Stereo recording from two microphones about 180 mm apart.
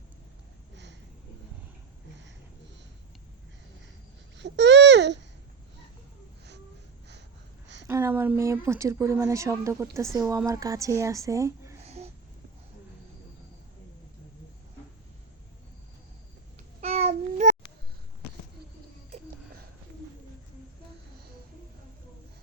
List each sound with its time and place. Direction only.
4.4 s babbling: 80° right
7.9 s speech: 15° right (ahead or behind)
11.9 s a sound: 35° right (ahead or behind)
16.8 s child singing: 35° right (ahead or behind)